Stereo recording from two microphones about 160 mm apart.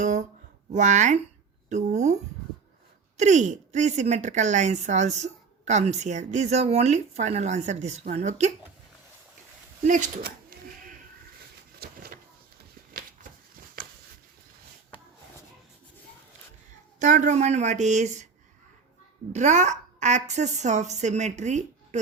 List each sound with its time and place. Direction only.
0.0 s a woman's voice: 50° right (ahead or behind)
3.2 s a woman's voice: 50° right (ahead or behind)
9.8 s a woman's voice: 55° right (ahead or behind)
11.8 s a sound: 75° right (ahead or behind)
13.8 s a sound: 70° right (ahead or behind)
17.0 s a woman's voice: 50° right (ahead or behind)
19.3 s a woman's voice: 50° right (ahead or behind)